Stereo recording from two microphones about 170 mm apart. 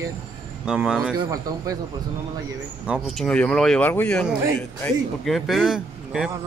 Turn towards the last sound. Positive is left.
turn(degrees=-5)  # may be behind; listen again after turning